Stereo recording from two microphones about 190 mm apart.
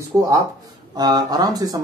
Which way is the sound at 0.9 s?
20° right (ahead or behind).